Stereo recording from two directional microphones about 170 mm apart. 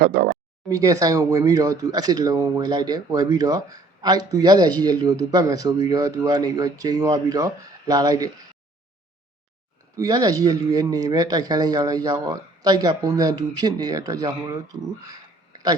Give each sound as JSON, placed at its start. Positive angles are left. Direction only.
{"t": 0.0, "sound": "speech", "side_deg": -60}
{"t": 0.7, "sound": "speech", "side_deg": -20}
{"t": 9.9, "sound": "speech", "side_deg": -20}